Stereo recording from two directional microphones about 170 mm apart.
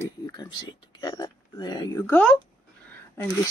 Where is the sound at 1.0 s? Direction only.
25° left (ahead or behind).